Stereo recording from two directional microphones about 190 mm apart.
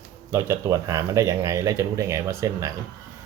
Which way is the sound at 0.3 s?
15° right (ahead or behind).